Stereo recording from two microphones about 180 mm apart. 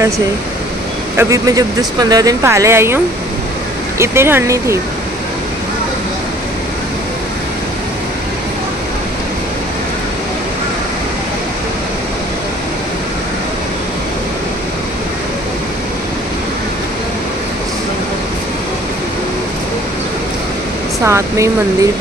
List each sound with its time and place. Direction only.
1.1 s speech: 20° right (ahead or behind)
4.0 s speech: 15° right (ahead or behind)
21.0 s speech: 15° right (ahead or behind)